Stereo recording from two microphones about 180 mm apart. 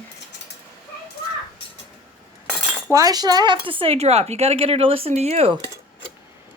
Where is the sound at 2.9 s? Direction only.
20° right (ahead or behind).